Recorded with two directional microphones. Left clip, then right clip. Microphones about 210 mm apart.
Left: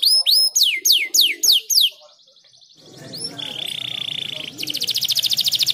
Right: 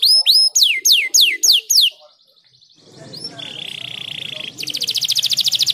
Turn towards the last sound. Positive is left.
turn(degrees=-20)  # may be behind; listen again after turning